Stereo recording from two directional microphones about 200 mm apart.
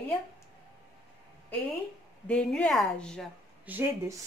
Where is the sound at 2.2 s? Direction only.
5° left (ahead or behind).